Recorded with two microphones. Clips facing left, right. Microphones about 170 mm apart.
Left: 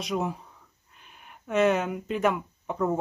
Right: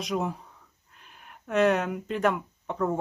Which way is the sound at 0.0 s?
Centre (ahead or behind).